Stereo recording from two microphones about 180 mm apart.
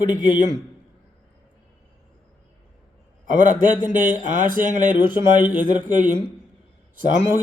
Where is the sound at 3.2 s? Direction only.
45° right (ahead or behind).